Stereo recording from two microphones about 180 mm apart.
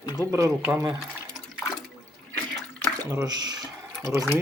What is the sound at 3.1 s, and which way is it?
Speech, 20° right (ahead or behind).